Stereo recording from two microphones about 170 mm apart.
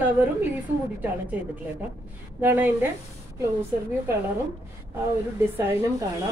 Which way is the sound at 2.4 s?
10° right (ahead or behind).